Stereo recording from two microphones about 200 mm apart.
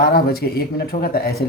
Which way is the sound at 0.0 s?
50° left (ahead or behind).